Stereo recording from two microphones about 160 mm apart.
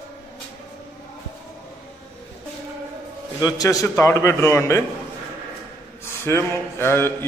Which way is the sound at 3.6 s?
20° left (ahead or behind).